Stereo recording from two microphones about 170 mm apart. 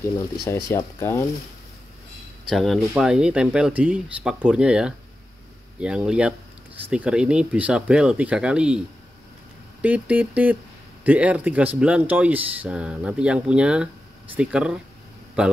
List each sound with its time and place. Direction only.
0.7 s speech: 15° left (ahead or behind)
2.4 s speech: centre (ahead or behind)